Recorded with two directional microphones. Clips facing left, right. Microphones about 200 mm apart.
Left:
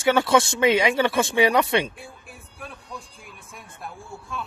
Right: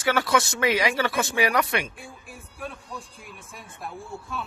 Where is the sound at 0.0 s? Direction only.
25° left (ahead or behind).